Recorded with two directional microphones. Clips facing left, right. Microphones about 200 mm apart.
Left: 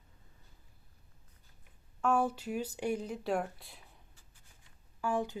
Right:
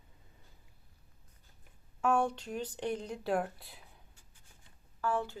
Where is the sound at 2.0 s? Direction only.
Centre (ahead or behind).